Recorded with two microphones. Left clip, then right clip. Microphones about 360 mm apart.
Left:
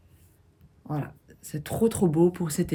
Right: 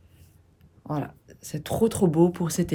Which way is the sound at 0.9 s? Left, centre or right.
Centre.